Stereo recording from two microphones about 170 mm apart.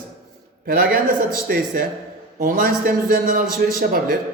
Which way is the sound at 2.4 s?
60° right (ahead or behind).